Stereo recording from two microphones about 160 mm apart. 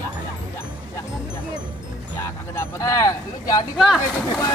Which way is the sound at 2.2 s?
15° left (ahead or behind).